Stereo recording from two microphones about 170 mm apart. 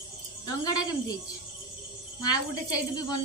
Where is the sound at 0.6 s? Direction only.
25° left (ahead or behind).